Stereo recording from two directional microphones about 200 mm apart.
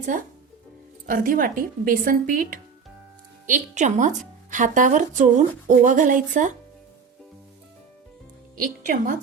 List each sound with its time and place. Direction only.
1.0 s a woman's voice: 45° right (ahead or behind)
8.5 s speech: 45° right (ahead or behind)